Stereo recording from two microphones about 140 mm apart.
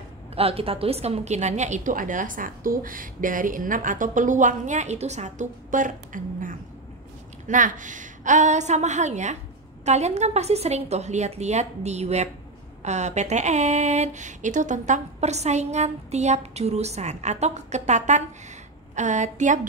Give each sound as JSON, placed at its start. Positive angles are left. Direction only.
{"t": 0.4, "sound": "a woman's voice", "side_deg": -45}